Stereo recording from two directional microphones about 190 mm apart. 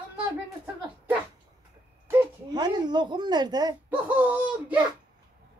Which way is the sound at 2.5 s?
20° right (ahead or behind).